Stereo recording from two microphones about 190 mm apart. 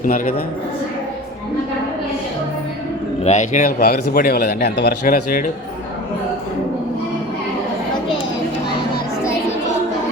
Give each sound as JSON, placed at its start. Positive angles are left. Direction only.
{"t": 0.0, "sound": "a man's voice", "side_deg": 45}
{"t": 3.2, "sound": "a man's voice", "side_deg": 40}
{"t": 5.1, "sound": "a man's voice", "side_deg": 45}